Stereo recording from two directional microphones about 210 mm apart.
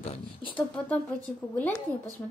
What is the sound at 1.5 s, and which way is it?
Speech, 5° left (ahead or behind).